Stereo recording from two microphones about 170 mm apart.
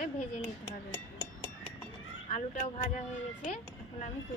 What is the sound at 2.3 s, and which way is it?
Speech, 45° left (ahead or behind).